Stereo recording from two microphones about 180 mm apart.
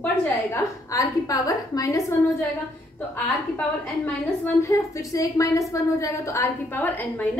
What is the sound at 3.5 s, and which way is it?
A woman's voice, 10° left (ahead or behind).